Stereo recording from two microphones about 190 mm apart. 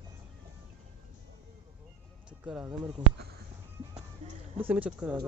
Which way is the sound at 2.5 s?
5° right (ahead or behind).